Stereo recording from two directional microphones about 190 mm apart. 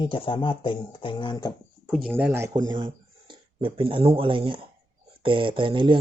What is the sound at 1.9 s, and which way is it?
Speech, 5° right (ahead or behind).